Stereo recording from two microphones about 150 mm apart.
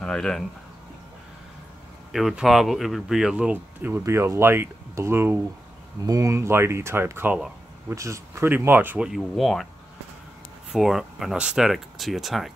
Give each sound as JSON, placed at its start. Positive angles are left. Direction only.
{"t": 0.0, "sound": "speech", "side_deg": 5}
{"t": 2.1, "sound": "speech", "side_deg": 0}
{"t": 7.9, "sound": "speech", "side_deg": -20}
{"t": 9.1, "sound": "speech", "side_deg": 0}
{"t": 10.7, "sound": "speech", "side_deg": 0}